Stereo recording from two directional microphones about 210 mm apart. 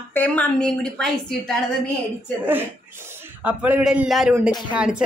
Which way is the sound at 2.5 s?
10° right (ahead or behind).